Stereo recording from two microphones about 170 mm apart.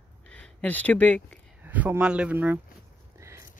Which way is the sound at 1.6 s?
10° right (ahead or behind).